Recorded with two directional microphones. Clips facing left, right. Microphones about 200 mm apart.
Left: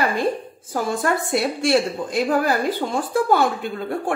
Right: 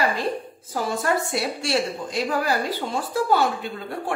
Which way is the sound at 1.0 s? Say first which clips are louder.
Left 3 dB; 55° left (ahead or behind).